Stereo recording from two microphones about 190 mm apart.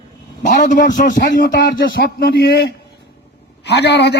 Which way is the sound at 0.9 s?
40° left (ahead or behind).